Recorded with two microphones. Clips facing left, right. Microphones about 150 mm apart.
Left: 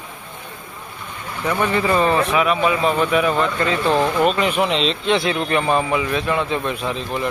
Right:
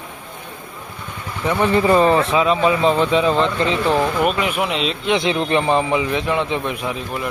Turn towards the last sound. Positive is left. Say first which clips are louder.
# left 1 dB
turn(degrees=-5)  # may be behind; listen again after turning